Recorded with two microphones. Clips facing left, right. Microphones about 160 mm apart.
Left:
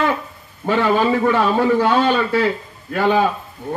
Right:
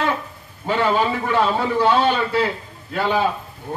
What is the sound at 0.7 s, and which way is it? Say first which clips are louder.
Speech: left 3 dB; 55° left (ahead or behind).